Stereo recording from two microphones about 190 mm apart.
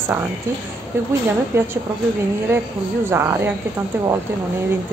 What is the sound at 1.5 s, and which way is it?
Speech, 15° right (ahead or behind).